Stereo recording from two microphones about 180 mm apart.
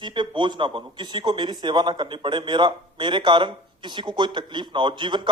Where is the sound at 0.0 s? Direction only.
25° right (ahead or behind).